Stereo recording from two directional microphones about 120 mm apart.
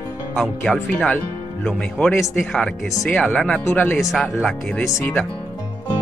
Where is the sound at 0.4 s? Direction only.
10° left (ahead or behind).